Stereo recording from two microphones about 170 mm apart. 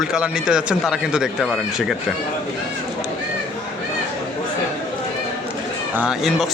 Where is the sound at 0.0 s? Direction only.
5° right (ahead or behind).